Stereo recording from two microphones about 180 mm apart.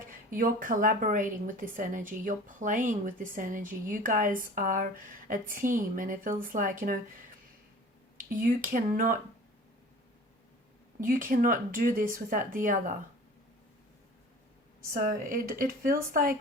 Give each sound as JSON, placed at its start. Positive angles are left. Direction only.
{"t": 0.3, "sound": "a woman's voice", "side_deg": -50}
{"t": 8.2, "sound": "a woman's voice", "side_deg": -50}
{"t": 11.0, "sound": "a woman's voice", "side_deg": -50}
{"t": 15.0, "sound": "a woman's voice", "side_deg": -50}